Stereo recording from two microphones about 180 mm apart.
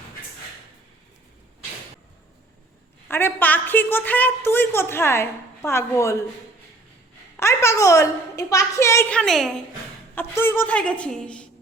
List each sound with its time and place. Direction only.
3.1 s a woman's voice: 10° left (ahead or behind)
7.3 s a woman's voice: 15° left (ahead or behind)
10.2 s a woman's voice: 10° left (ahead or behind)